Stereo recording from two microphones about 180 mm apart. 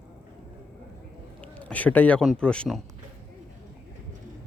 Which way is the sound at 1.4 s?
10° left (ahead or behind).